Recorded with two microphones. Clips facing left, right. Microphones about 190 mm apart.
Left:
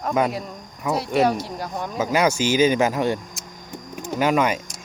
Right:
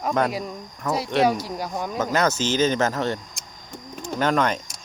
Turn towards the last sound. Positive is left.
turn(degrees=10)  # may be behind; listen again after turning